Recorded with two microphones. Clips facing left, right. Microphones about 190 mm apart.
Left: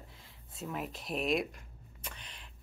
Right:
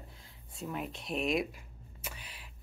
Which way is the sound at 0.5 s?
Centre (ahead or behind).